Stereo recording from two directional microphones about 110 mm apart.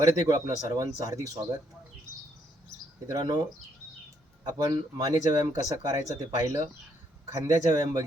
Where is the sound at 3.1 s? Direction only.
40° right (ahead or behind).